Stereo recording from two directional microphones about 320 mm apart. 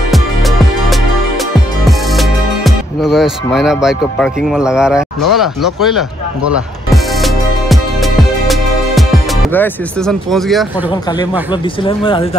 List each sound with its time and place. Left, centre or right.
0.1 s music: centre
10.9 s speech: centre